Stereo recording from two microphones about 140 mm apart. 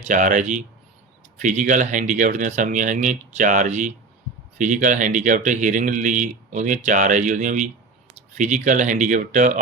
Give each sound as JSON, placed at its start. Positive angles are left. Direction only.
{"t": 0.0, "sound": "speech", "side_deg": -65}